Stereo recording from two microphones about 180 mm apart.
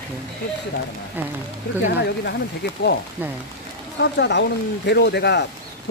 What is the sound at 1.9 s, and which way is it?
Speech, 65° left (ahead or behind).